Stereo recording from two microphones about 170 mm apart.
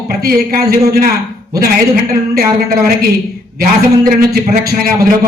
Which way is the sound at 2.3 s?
60° right (ahead or behind).